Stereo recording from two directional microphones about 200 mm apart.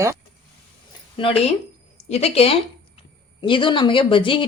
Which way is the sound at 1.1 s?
30° left (ahead or behind).